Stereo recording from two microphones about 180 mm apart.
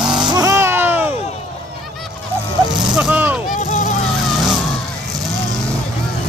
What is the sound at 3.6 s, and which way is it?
Vehicle, 40° left (ahead or behind).